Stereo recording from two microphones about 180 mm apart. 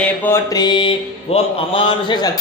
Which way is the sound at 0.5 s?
25° left (ahead or behind).